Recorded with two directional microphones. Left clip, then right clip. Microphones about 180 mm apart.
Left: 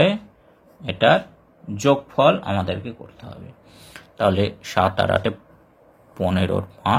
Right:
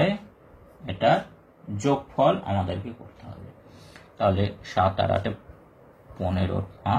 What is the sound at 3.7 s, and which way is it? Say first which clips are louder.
Speech: left 4 dB; 45° left (ahead or behind).